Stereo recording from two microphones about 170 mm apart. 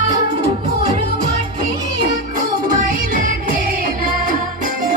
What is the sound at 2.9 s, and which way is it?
Music, 55° right (ahead or behind).